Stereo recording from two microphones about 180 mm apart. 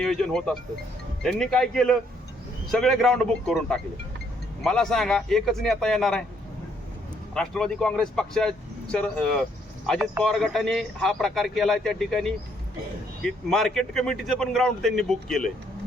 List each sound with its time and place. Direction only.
0.0 s a man's voice: centre (ahead or behind)
7.3 s a man's voice: 5° left (ahead or behind)